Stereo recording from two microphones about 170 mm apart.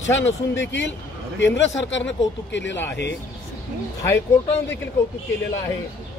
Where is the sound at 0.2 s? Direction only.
90° left.